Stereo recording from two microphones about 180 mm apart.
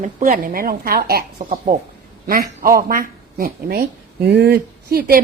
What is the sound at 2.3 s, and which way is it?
A woman's voice, 50° right (ahead or behind).